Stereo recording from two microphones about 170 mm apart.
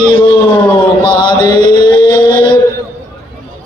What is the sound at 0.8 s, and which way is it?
Chant, 25° left (ahead or behind).